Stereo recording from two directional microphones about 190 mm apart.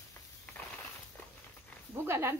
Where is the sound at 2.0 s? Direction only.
15° right (ahead or behind).